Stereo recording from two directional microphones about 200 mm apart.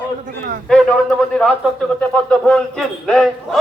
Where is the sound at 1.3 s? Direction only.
Centre (ahead or behind).